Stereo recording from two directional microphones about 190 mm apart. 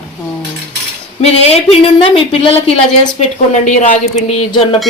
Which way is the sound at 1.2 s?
30° left (ahead or behind).